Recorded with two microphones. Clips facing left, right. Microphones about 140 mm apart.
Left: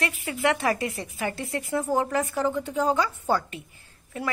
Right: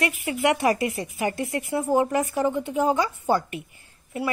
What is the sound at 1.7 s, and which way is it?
A woman's voice, 15° right (ahead or behind).